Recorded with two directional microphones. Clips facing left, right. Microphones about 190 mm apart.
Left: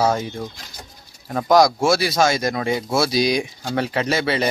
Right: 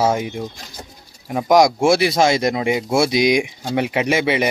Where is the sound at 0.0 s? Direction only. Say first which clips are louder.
Right 1 dB; 15° right (ahead or behind).